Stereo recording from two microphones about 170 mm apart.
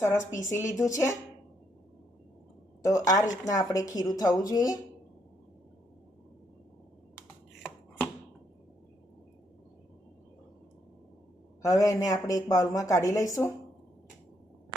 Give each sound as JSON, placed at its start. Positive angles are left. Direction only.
{"t": 0.0, "sound": "speech", "side_deg": 15}
{"t": 2.8, "sound": "speech", "side_deg": 20}
{"t": 11.6, "sound": "speech", "side_deg": 20}